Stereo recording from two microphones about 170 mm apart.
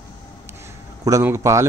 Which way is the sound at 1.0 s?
15° right (ahead or behind).